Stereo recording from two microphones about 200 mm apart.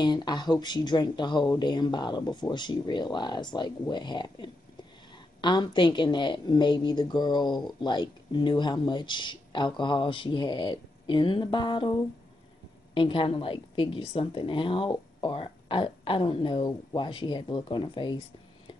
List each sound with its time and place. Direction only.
0.0 s a woman's voice: 20° left (ahead or behind)
12.9 s a woman's voice: 25° left (ahead or behind)